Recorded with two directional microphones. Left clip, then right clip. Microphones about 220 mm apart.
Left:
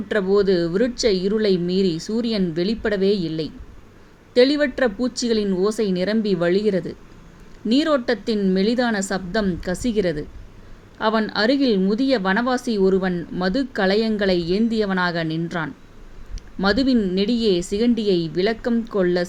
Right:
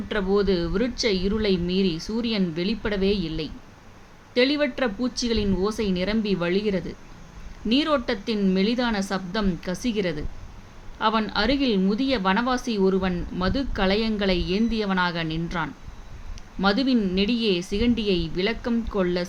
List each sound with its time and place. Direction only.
0.1 s speech: 20° left (ahead or behind)